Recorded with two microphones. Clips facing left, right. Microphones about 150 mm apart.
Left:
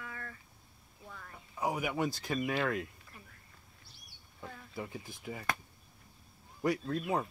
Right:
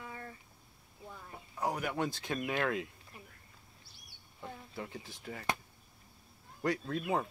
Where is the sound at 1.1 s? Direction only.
20° right (ahead or behind).